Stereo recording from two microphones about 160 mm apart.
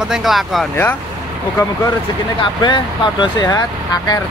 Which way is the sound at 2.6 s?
30° left (ahead or behind).